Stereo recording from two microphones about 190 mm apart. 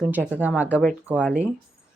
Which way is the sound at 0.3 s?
10° right (ahead or behind).